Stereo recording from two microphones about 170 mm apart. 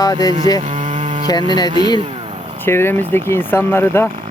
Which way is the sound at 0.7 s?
45° right (ahead or behind).